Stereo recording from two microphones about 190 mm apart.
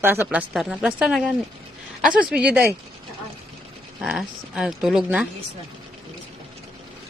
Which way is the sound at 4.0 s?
Centre (ahead or behind).